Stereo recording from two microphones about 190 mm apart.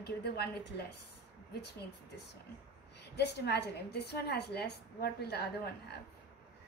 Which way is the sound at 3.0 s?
60° left (ahead or behind).